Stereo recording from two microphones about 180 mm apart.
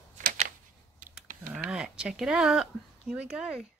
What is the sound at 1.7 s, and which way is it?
Speech, 5° right (ahead or behind).